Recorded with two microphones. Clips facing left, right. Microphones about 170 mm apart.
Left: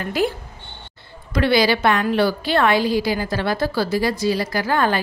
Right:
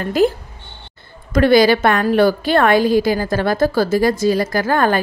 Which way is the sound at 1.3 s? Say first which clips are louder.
Right 6 dB; 45° right (ahead or behind).